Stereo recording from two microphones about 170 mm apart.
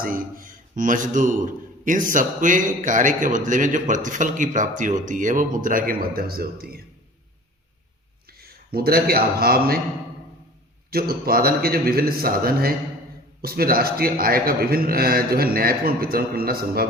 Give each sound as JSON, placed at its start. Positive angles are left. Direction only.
{"t": 0.0, "sound": "a man's voice", "side_deg": -55}
{"t": 8.3, "sound": "a man's voice", "side_deg": -65}
{"t": 10.9, "sound": "a man's voice", "side_deg": -60}